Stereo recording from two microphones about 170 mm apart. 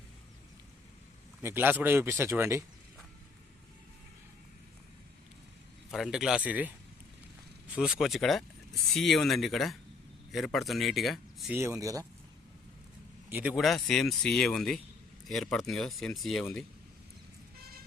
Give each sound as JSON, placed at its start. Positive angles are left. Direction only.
{"t": 1.4, "sound": "speech", "side_deg": -15}
{"t": 5.9, "sound": "speech", "side_deg": 0}
{"t": 7.8, "sound": "speech", "side_deg": -5}
{"t": 11.5, "sound": "speech", "side_deg": -15}
{"t": 13.3, "sound": "speech", "side_deg": -10}